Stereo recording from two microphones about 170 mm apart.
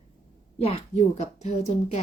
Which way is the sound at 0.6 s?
35° left (ahead or behind).